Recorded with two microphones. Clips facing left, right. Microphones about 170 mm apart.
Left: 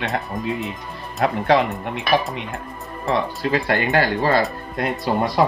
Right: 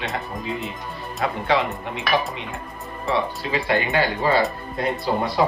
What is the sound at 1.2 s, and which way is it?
Speech, 55° left (ahead or behind).